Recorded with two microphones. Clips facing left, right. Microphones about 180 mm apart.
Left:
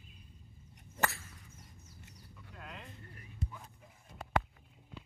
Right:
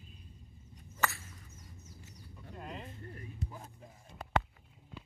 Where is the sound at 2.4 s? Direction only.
35° right (ahead or behind).